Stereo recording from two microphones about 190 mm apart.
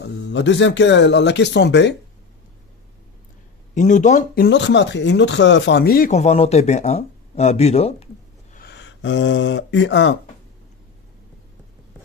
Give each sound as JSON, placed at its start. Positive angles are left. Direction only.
{"t": 0.3, "sound": "speech", "side_deg": 70}
{"t": 3.7, "sound": "speech", "side_deg": 40}
{"t": 4.5, "sound": "speech", "side_deg": 65}
{"t": 8.5, "sound": "speech", "side_deg": 60}